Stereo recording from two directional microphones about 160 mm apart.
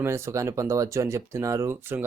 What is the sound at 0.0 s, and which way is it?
Speech, 15° right (ahead or behind).